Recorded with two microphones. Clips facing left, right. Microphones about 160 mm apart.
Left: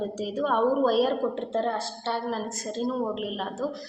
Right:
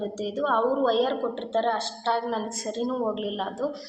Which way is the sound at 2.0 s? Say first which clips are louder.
Right 4 dB; centre (ahead or behind).